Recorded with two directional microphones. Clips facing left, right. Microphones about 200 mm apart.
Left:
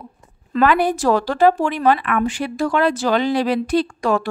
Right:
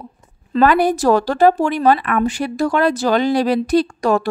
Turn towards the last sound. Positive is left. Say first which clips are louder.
# right 3 dB
turn(degrees=-40)  # may be behind; listen again after turning